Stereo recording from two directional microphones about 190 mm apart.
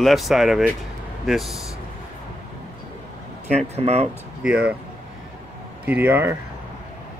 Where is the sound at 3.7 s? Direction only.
35° right (ahead or behind).